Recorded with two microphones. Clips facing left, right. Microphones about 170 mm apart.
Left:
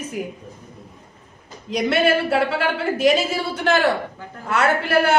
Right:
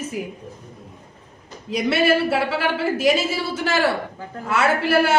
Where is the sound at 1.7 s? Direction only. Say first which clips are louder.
Even; 5° right (ahead or behind).